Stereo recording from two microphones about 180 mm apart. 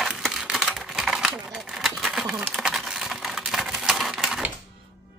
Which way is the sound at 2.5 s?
Centre (ahead or behind).